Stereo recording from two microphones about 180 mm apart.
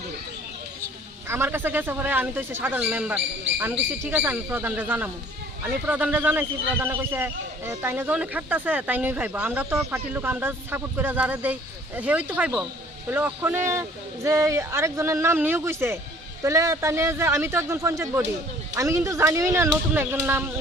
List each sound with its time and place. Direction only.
1.3 s a man's voice: 15° right (ahead or behind)